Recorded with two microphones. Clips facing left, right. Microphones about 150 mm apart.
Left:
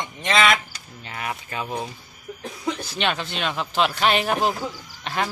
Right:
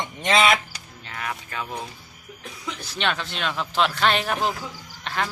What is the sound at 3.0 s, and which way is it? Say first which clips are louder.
Speech: right 3 dB; 5° left (ahead or behind).